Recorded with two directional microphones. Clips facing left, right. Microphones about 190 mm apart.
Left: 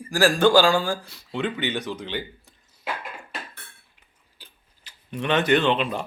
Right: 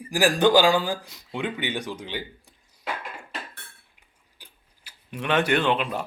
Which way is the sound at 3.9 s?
15° right (ahead or behind).